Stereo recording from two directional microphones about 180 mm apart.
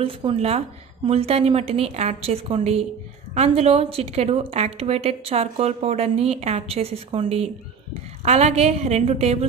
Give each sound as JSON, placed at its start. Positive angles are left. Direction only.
{"t": 0.0, "sound": "a woman's voice", "side_deg": -30}